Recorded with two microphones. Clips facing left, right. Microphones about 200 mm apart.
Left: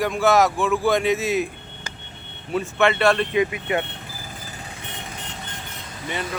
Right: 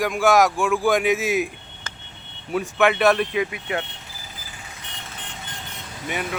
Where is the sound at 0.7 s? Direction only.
Centre (ahead or behind).